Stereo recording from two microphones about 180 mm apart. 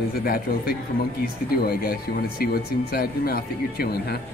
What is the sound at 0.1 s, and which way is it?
Speech, 55° left (ahead or behind).